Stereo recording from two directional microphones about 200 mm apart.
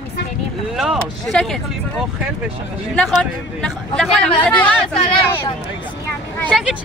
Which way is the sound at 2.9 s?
5° left (ahead or behind).